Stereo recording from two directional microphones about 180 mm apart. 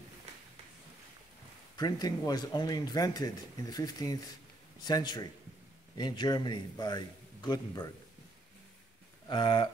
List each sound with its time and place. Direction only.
1.8 s speech: 20° left (ahead or behind)
9.3 s speech: 25° left (ahead or behind)